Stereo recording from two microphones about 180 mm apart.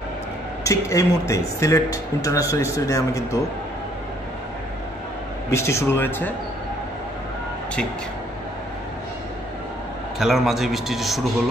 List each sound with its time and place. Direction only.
0.7 s speech: 15° left (ahead or behind)
5.5 s speech: 15° left (ahead or behind)
10.1 s a man's voice: centre (ahead or behind)